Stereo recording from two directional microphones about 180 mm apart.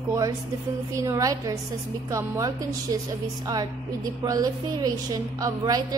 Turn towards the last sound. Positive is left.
turn(degrees=-20)  # may be behind; listen again after turning